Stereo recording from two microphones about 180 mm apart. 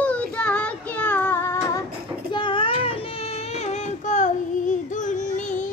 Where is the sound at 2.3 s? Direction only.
25° left (ahead or behind).